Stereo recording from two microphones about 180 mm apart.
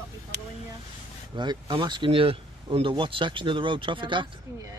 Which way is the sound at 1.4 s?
25° right (ahead or behind).